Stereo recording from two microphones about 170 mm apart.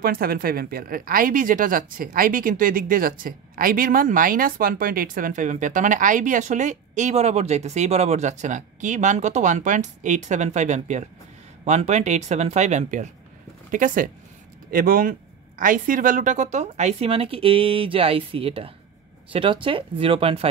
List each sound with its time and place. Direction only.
0.0 s speech: 60° right (ahead or behind); by 20.4 s 35° right (ahead or behind)